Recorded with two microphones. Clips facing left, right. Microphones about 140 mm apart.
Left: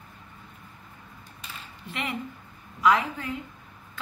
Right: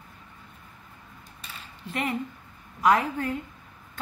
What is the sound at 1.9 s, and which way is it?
A woman's voice, 40° right (ahead or behind).